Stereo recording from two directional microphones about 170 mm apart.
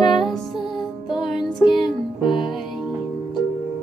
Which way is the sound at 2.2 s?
30° left (ahead or behind).